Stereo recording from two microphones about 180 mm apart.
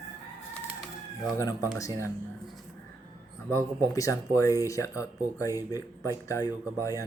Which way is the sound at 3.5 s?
15° left (ahead or behind).